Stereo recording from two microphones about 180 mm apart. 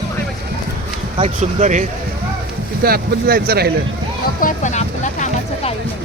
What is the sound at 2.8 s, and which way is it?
Speech, 60° right (ahead or behind).